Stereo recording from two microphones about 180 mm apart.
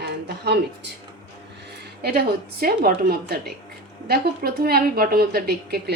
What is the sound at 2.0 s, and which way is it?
A woman's voice, 60° right (ahead or behind).